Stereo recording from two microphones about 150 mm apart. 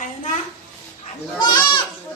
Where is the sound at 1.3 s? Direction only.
30° left (ahead or behind).